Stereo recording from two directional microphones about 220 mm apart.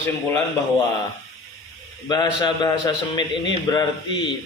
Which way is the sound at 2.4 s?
20° left (ahead or behind).